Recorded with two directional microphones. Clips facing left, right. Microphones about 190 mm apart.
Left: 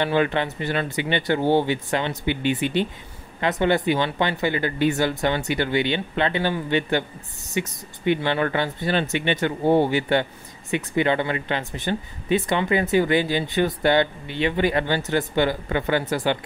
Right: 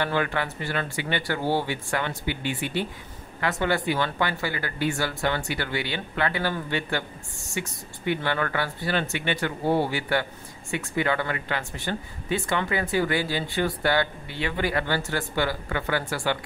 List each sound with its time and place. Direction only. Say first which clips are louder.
0.0 s speech: left 5 dB; 20° left (ahead or behind)